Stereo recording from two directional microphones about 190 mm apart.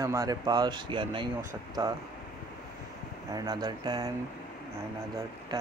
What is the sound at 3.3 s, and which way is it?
Speech, 20° right (ahead or behind).